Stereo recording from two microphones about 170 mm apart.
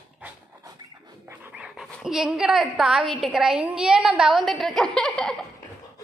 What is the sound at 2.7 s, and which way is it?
A woman's voice, 5° right (ahead or behind).